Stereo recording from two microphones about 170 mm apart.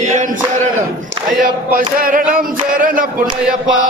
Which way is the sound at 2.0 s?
55° right (ahead or behind).